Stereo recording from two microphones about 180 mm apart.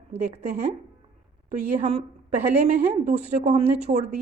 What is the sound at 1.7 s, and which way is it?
Speech, 35° right (ahead or behind).